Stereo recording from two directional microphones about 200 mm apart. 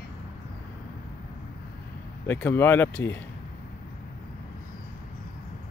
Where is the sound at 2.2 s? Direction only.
10° left (ahead or behind).